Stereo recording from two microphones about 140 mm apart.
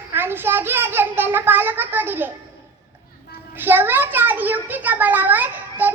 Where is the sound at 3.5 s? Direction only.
15° right (ahead or behind).